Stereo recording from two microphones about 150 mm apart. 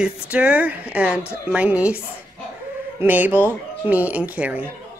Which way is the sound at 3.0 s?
10° right (ahead or behind).